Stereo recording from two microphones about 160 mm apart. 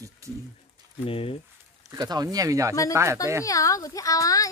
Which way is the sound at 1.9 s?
25° right (ahead or behind).